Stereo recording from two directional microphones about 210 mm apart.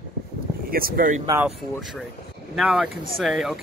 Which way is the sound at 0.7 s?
45° right (ahead or behind).